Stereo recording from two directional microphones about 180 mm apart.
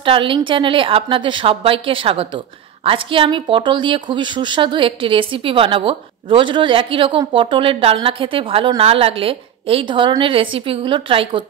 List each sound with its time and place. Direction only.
0.0 s a woman's voice: 30° right (ahead or behind)